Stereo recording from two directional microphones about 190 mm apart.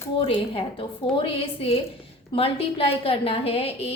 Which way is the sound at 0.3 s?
30° left (ahead or behind).